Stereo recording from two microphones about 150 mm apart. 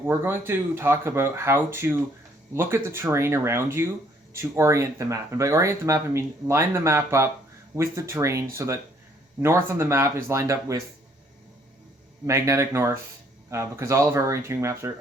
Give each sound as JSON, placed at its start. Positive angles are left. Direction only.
{"t": 0.0, "sound": "speech", "side_deg": -15}
{"t": 12.2, "sound": "speech", "side_deg": -20}